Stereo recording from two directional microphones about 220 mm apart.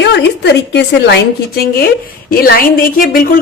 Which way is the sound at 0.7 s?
50° left (ahead or behind).